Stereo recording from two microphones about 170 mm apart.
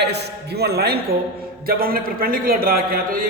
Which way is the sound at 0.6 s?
70° right (ahead or behind).